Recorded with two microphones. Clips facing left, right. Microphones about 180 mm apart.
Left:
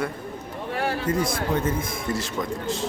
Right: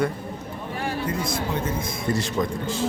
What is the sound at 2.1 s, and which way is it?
Speech, centre (ahead or behind).